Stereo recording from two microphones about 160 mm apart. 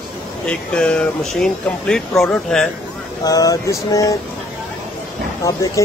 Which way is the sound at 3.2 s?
20° left (ahead or behind).